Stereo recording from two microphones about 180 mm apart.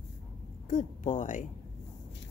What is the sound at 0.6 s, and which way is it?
Speech, 45° left (ahead or behind).